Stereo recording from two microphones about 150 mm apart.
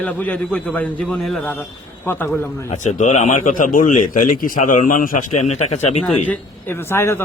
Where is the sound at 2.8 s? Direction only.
55° left (ahead or behind).